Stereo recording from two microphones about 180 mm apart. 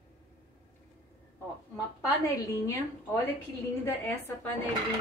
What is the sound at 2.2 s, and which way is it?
Speech, 15° left (ahead or behind).